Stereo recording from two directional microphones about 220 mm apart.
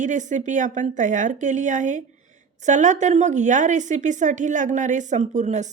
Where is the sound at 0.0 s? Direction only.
35° right (ahead or behind).